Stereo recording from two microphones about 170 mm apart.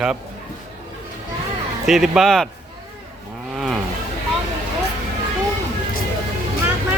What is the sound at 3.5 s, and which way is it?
Cattle, centre (ahead or behind).